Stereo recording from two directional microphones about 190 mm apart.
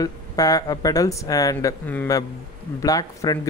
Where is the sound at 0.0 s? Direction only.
20° left (ahead or behind).